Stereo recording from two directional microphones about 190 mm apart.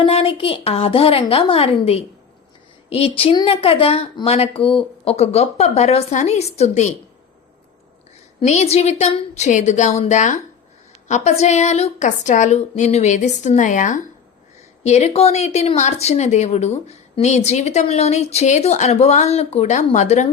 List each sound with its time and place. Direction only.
0.0 s speech: 30° left (ahead or behind)
8.4 s speech: 35° left (ahead or behind)